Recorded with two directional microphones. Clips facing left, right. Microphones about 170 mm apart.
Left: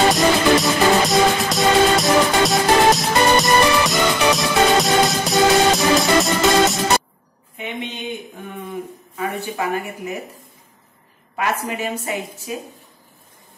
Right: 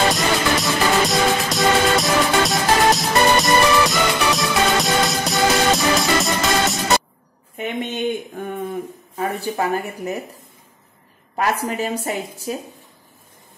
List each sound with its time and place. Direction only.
0.1 s music: centre (ahead or behind)
7.5 s a sound: 45° right (ahead or behind)
9.1 s speech: 35° right (ahead or behind)
11.3 s a woman's voice: 40° right (ahead or behind)